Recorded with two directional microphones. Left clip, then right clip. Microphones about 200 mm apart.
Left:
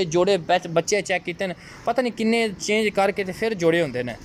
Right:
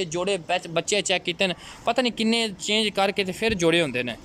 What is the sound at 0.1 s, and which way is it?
Speech, 5° right (ahead or behind).